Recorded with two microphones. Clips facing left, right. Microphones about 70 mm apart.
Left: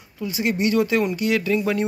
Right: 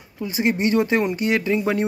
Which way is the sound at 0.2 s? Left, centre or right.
Right.